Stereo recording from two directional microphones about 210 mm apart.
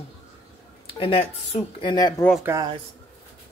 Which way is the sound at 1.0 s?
25° left (ahead or behind).